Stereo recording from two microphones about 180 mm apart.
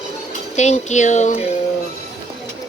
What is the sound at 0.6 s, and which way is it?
Speech, 40° left (ahead or behind).